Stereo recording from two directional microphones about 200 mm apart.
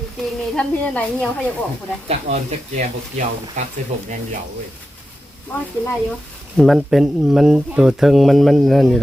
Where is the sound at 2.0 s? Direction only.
30° right (ahead or behind).